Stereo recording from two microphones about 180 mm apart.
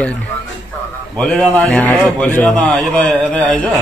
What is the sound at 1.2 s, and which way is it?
Speech, 5° left (ahead or behind).